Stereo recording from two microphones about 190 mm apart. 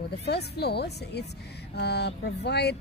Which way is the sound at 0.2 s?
60° left (ahead or behind).